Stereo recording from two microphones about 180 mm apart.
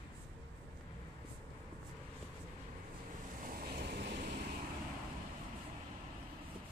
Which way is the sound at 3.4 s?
60° right (ahead or behind).